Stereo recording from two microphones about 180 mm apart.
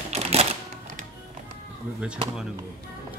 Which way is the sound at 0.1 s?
35° right (ahead or behind).